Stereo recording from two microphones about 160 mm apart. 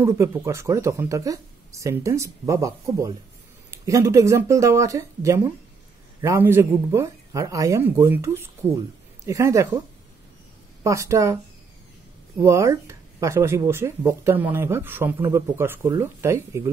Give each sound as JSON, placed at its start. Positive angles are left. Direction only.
{"t": 0.0, "sound": "speech", "side_deg": -15}
{"t": 10.8, "sound": "speech", "side_deg": -20}
{"t": 12.4, "sound": "speech", "side_deg": -20}